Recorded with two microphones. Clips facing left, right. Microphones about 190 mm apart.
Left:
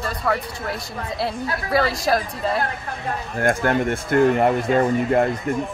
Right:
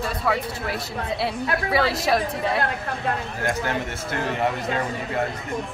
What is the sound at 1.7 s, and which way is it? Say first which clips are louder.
Speech: left 3 dB; centre (ahead or behind).